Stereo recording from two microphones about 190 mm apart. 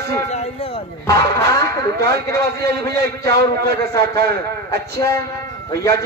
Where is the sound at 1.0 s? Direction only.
20° left (ahead or behind).